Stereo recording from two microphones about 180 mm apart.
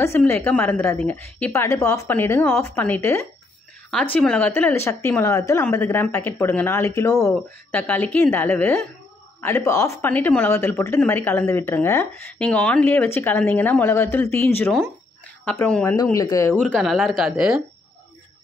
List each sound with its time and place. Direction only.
0.0 s speech: 15° left (ahead or behind)
16.0 s speech: 20° left (ahead or behind)
16.6 s speech: 5° left (ahead or behind)